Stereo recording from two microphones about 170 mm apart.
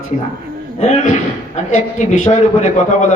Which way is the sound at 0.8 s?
45° left (ahead or behind).